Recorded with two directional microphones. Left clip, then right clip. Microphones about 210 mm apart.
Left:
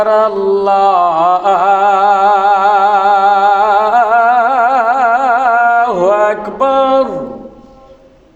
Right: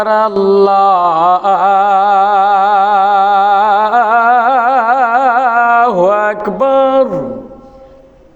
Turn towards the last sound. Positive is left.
turn(degrees=-45)  # may be behind; listen again after turning